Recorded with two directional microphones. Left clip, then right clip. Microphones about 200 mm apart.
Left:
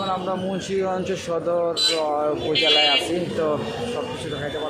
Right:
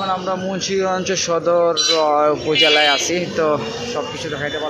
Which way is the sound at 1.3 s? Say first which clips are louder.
Right 7 dB; 10° right (ahead or behind).